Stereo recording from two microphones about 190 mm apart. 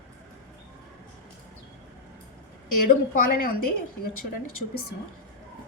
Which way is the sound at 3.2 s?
50° left (ahead or behind).